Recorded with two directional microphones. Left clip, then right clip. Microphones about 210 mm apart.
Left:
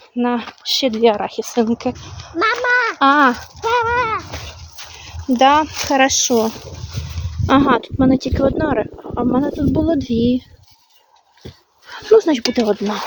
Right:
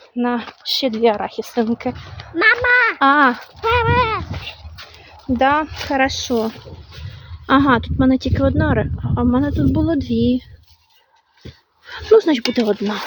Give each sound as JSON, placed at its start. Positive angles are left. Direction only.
{"t": 0.2, "sound": "speech", "side_deg": 5}
{"t": 2.4, "sound": "a sound", "side_deg": -40}
{"t": 3.0, "sound": "speech", "side_deg": 5}
{"t": 3.6, "sound": "a sound", "side_deg": -35}
{"t": 5.4, "sound": "speech", "side_deg": 10}
{"t": 11.9, "sound": "speech", "side_deg": -10}